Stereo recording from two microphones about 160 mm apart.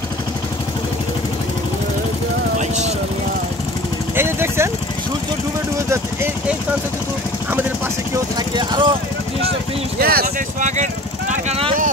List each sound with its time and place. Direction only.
4.1 s vehicle: 15° right (ahead or behind)
8.1 s vehicle: 25° right (ahead or behind)
9.9 s a sound: 70° right (ahead or behind)
10.2 s vehicle: 50° right (ahead or behind)